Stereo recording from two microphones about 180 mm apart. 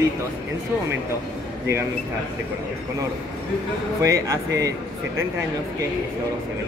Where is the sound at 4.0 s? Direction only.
20° right (ahead or behind).